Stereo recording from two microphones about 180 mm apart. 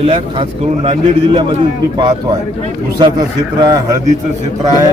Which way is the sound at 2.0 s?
25° right (ahead or behind).